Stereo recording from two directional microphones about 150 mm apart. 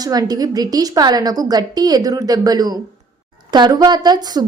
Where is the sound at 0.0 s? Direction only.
25° right (ahead or behind).